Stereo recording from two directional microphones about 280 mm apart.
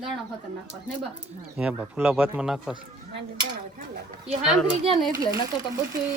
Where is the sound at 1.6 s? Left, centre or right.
Centre.